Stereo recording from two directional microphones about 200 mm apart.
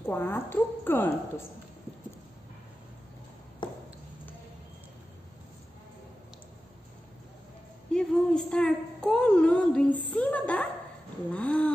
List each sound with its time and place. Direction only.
0.0 s speech: 10° left (ahead or behind)
3.6 s ping: 25° left (ahead or behind)
7.9 s a woman's voice: 5° left (ahead or behind)